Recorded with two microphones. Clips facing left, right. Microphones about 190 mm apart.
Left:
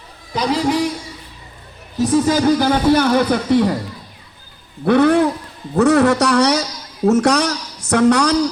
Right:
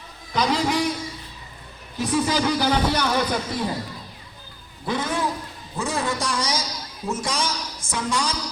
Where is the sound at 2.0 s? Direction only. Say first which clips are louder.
Left 7 dB; 45° left (ahead or behind); by 3.8 s 70° left (ahead or behind).